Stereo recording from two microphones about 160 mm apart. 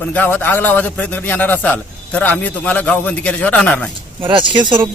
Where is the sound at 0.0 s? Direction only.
10° left (ahead or behind).